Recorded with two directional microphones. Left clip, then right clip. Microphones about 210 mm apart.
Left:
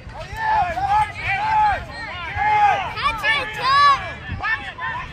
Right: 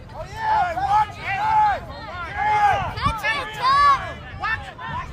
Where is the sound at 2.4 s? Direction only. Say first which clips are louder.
Left 2 dB; 30° left (ahead or behind).